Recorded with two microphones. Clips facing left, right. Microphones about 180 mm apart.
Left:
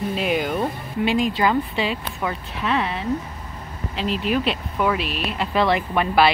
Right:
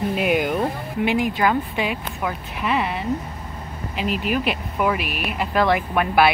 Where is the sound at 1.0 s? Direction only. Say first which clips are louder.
Even; 15° right (ahead or behind).